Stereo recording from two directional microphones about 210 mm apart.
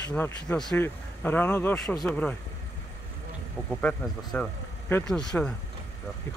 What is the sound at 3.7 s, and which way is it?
A man's voice, 5° left (ahead or behind).